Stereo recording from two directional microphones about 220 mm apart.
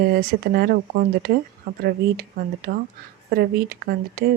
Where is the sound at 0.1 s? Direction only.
40° right (ahead or behind).